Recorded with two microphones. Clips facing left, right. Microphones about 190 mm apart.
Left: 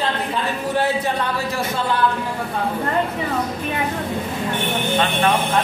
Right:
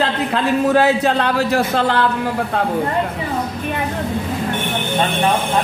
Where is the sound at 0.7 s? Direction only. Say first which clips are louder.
Right 6 dB; 85° right.